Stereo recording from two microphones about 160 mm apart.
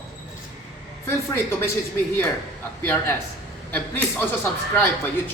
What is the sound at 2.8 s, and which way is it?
A man's voice, 10° left (ahead or behind).